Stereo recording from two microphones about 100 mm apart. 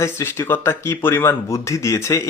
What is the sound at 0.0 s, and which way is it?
Speech, 25° left (ahead or behind).